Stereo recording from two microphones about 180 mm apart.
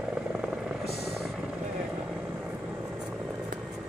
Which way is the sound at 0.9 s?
Centre (ahead or behind).